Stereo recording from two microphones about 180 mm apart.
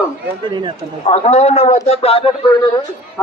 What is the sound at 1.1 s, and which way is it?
A man's voice, 40° left (ahead or behind).